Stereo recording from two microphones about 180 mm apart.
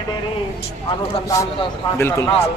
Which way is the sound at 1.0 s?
15° left (ahead or behind).